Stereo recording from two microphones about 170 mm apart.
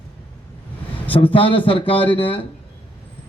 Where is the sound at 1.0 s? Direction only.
30° left (ahead or behind).